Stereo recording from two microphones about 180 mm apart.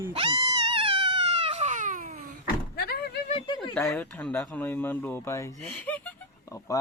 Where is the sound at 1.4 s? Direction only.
35° right (ahead or behind).